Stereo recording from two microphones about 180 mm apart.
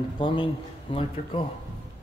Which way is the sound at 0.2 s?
25° left (ahead or behind).